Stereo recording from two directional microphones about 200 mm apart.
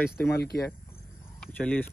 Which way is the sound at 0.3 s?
55° left (ahead or behind).